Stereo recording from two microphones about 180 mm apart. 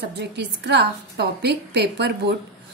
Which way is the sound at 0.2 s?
70° right (ahead or behind).